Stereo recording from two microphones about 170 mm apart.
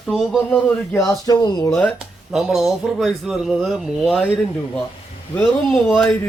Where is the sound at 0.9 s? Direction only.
20° left (ahead or behind).